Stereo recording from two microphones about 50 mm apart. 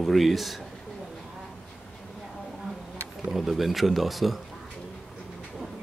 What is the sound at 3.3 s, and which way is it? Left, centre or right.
Speech, centre.